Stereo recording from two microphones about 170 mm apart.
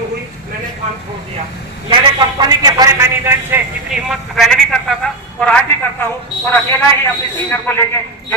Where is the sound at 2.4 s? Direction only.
20° right (ahead or behind).